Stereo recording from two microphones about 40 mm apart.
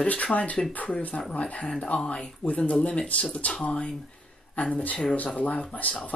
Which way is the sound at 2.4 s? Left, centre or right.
Left.